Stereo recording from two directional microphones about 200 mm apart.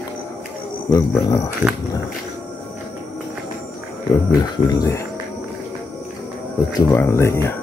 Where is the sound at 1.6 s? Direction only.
15° right (ahead or behind).